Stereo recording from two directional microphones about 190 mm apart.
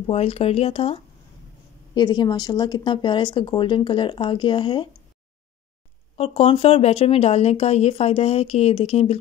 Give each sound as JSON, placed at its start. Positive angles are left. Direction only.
{"t": 0.0, "sound": "speech", "side_deg": 30}
{"t": 6.1, "sound": "speech", "side_deg": 30}